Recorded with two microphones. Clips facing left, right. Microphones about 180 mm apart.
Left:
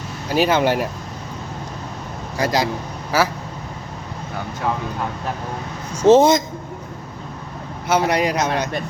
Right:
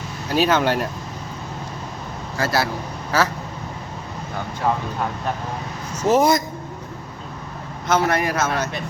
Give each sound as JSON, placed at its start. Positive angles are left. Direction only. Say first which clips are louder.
{"t": 0.3, "sound": "a man's voice", "louder": "left 1 dB", "side_deg": 10}
{"t": 2.4, "sound": "a man's voice", "louder": "left 2 dB", "side_deg": 15}
{"t": 6.1, "sound": "a man's voice", "louder": "left 5 dB", "side_deg": 25}
{"t": 7.9, "sound": "a man's voice", "louder": "left 2 dB", "side_deg": 15}